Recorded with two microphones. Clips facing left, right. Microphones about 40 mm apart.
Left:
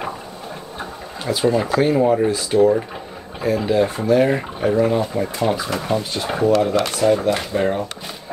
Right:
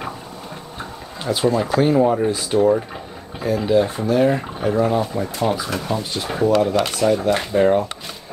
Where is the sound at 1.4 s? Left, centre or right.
Centre.